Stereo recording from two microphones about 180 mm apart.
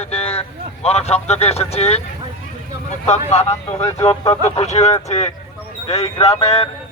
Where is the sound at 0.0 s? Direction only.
35° left (ahead or behind).